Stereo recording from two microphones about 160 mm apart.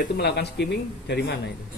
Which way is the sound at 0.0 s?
90° left.